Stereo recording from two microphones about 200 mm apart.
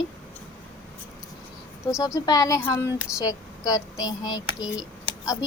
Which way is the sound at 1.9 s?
15° left (ahead or behind).